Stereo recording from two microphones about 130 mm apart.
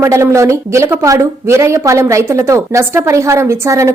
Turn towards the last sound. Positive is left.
turn(degrees=-25)  # may be behind; listen again after turning